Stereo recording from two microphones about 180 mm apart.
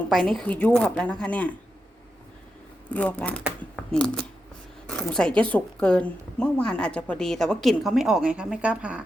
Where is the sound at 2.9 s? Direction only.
5° left (ahead or behind).